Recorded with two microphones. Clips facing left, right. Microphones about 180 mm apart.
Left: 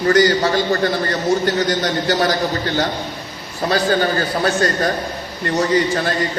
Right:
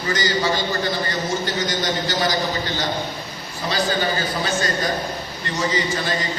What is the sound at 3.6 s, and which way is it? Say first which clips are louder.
A man's voice: left 5 dB; 60° left (ahead or behind).